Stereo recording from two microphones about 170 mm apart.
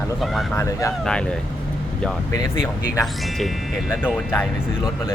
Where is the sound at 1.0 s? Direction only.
5° left (ahead or behind).